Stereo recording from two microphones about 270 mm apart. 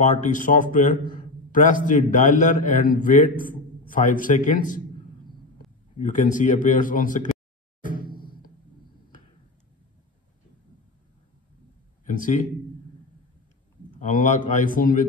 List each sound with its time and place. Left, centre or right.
0.0 s a man's voice: left
5.9 s a man's voice: left
7.8 s a sound: left
12.1 s a man's voice: left
13.9 s a man's voice: left